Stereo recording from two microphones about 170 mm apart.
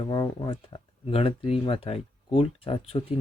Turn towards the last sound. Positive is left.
turn(degrees=35)  # may be behind; listen again after turning